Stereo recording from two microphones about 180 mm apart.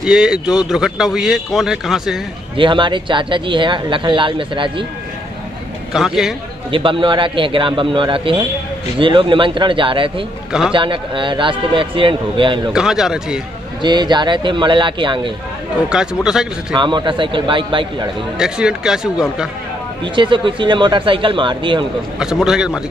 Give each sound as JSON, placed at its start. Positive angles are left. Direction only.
{"t": 0.0, "sound": "a man's voice", "side_deg": -5}
{"t": 2.5, "sound": "speech", "side_deg": -25}
{"t": 5.9, "sound": "a man's voice", "side_deg": 0}
{"t": 6.7, "sound": "speech", "side_deg": -30}
{"t": 12.7, "sound": "a man's voice", "side_deg": -5}
{"t": 13.8, "sound": "speech", "side_deg": -25}
{"t": 15.9, "sound": "a man's voice", "side_deg": -5}
{"t": 16.7, "sound": "speech", "side_deg": -25}
{"t": 18.4, "sound": "a man's voice", "side_deg": -5}
{"t": 20.2, "sound": "speech", "side_deg": -25}
{"t": 22.2, "sound": "a man's voice", "side_deg": -5}